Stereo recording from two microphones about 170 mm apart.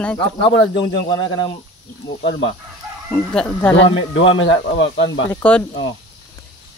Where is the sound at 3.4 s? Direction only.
5° left (ahead or behind).